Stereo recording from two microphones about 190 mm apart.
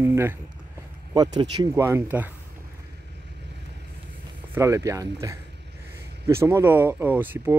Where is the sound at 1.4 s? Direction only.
20° right (ahead or behind).